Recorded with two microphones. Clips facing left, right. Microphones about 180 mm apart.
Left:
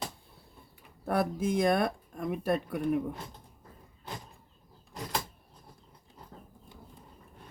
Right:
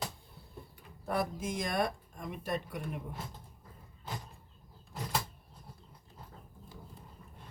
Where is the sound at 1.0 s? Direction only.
60° left (ahead or behind).